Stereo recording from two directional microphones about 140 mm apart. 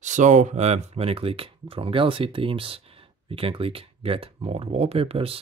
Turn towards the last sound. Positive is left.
turn(degrees=-40)  # may be behind; listen again after turning